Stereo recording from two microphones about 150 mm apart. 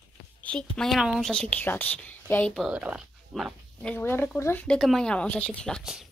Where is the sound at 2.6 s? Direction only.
5° right (ahead or behind).